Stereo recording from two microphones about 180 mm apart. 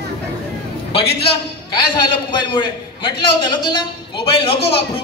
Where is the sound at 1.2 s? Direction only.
30° left (ahead or behind).